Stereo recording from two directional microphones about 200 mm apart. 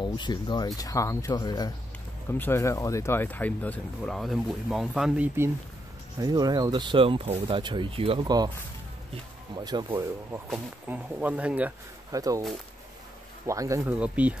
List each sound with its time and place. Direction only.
0.0 s speech: 20° left (ahead or behind); by 8.5 s 20° right (ahead or behind)
9.6 s speech: 20° right (ahead or behind)
10.5 s speech: 10° right (ahead or behind)
13.5 s speech: 15° right (ahead or behind)